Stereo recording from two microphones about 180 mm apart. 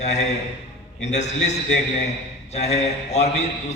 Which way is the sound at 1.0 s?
40° left (ahead or behind).